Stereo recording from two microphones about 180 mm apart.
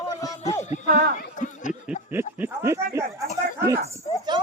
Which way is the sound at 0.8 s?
50° right (ahead or behind).